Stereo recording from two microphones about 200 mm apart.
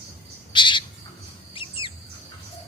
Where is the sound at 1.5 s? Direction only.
25° left (ahead or behind).